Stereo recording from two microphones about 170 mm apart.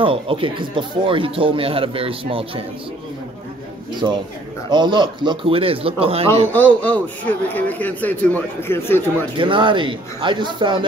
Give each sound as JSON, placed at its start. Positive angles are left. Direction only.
{"t": 0.0, "sound": "speech", "side_deg": -30}
{"t": 3.9, "sound": "speech", "side_deg": -25}
{"t": 6.5, "sound": "a man's voice", "side_deg": 10}
{"t": 9.4, "sound": "speech", "side_deg": -30}